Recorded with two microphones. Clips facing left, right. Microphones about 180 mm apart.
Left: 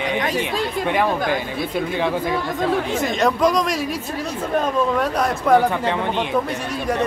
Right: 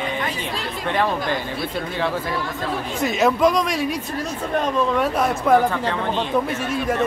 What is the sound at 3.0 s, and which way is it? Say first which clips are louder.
Speech: right 3 dB; centre (ahead or behind).